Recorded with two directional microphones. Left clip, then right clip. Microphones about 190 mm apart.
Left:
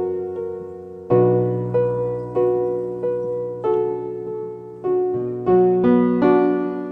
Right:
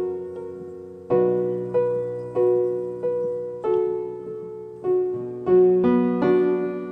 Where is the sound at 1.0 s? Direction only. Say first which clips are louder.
Left 4 dB; 15° left (ahead or behind).